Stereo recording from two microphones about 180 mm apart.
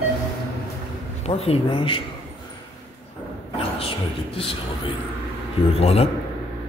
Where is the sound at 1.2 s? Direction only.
35° left (ahead or behind).